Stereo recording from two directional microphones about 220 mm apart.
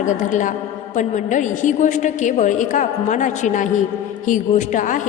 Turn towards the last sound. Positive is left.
turn(degrees=35)  # may be behind; listen again after turning